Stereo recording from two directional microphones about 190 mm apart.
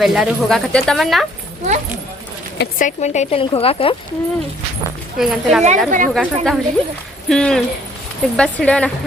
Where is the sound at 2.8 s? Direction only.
35° left (ahead or behind).